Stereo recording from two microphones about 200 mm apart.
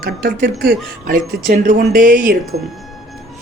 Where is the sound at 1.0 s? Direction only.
40° right (ahead or behind).